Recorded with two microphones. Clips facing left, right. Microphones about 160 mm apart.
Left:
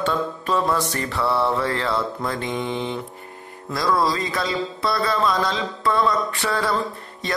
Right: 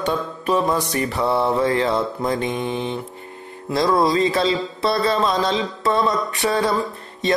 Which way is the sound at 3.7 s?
25° right (ahead or behind).